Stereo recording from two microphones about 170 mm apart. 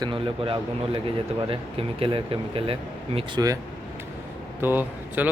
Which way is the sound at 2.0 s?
30° right (ahead or behind).